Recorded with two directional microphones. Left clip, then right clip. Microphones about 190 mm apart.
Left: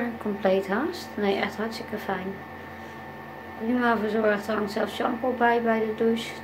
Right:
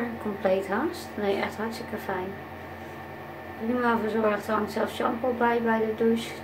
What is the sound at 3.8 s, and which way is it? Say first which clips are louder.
Speech: left 1 dB; 15° left (ahead or behind).